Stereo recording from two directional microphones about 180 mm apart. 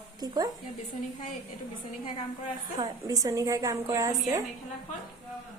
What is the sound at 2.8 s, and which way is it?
A woman's voice, 20° right (ahead or behind).